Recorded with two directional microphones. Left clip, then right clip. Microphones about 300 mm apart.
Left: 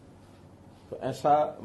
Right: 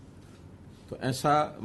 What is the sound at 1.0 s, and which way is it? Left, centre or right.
Speech, right.